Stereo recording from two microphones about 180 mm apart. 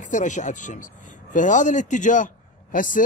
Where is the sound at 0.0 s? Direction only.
45° left (ahead or behind).